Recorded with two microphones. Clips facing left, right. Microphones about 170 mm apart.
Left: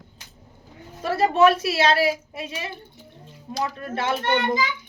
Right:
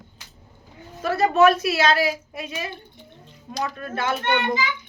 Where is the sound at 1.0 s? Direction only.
30° left (ahead or behind).